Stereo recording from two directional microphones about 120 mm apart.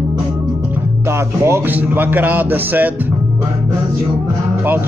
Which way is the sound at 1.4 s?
20° right (ahead or behind).